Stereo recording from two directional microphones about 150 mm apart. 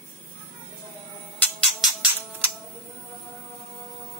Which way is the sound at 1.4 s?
Centre (ahead or behind).